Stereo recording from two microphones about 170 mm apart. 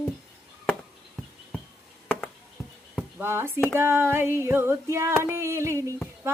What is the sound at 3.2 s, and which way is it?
Female singing, 15° right (ahead or behind).